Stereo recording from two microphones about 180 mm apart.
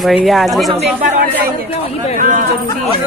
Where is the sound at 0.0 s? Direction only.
Centre (ahead or behind).